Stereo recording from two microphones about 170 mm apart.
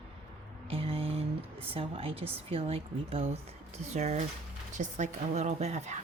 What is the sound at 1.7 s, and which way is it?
A woman's voice, 35° right (ahead or behind).